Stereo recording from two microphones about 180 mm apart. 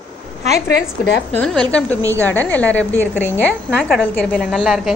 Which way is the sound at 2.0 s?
15° right (ahead or behind).